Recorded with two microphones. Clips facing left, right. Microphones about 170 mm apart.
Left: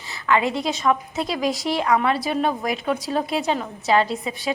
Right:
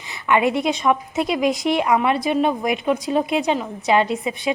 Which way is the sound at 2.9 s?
Centre (ahead or behind).